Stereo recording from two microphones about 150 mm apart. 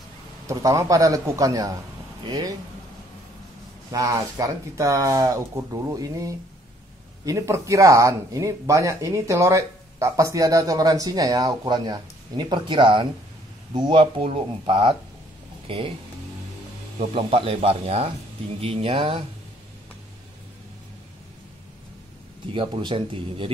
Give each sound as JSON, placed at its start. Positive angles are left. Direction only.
{"t": 0.5, "sound": "speech", "side_deg": -20}
{"t": 3.9, "sound": "speech", "side_deg": -25}
{"t": 17.0, "sound": "speech", "side_deg": -40}
{"t": 22.5, "sound": "speech", "side_deg": -35}